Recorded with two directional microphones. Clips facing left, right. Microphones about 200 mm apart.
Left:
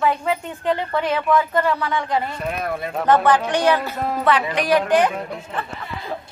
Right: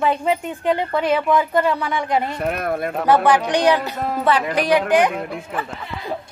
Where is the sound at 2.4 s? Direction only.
55° right (ahead or behind).